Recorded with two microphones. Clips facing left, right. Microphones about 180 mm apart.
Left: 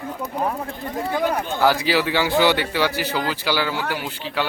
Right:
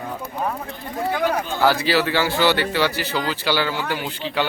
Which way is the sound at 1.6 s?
15° left (ahead or behind).